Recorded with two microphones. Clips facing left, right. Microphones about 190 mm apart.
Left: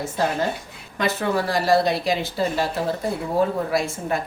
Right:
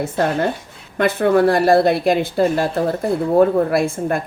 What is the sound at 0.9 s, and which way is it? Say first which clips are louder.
Speech: right 8 dB; 55° right (ahead or behind).